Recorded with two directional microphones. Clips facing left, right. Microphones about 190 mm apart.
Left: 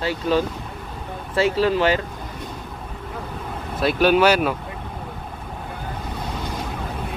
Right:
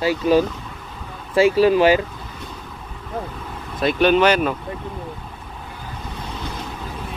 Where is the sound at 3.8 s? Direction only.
5° left (ahead or behind).